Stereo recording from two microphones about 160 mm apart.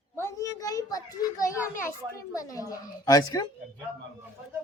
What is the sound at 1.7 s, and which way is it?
A woman's voice, 20° left (ahead or behind).